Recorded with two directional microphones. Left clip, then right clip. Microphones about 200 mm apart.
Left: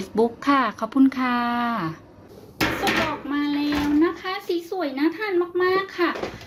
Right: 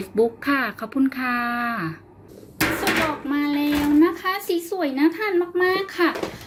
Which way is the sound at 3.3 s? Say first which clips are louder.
Right 2 dB; 15° right (ahead or behind).